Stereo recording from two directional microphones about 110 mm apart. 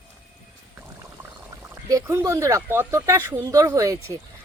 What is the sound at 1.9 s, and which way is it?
Speech, 25° right (ahead or behind).